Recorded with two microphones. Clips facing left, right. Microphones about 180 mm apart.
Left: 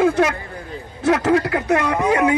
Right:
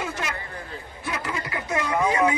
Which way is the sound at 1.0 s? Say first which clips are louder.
Left 15 dB; 80° left.